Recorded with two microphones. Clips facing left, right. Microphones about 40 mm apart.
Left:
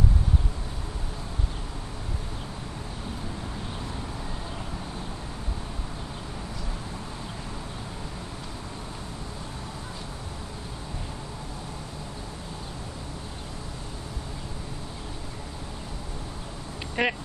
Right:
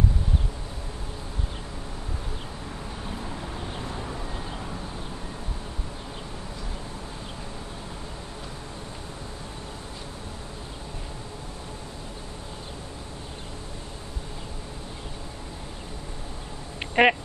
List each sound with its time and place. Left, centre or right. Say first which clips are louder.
17.0 s speech: right 7 dB; right